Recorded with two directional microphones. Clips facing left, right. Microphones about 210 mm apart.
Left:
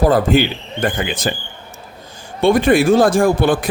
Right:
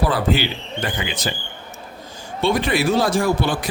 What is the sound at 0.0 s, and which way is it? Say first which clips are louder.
Speech: left 6 dB; 45° left (ahead or behind).